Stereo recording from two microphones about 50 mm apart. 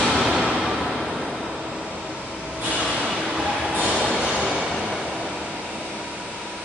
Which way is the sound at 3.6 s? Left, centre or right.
Right.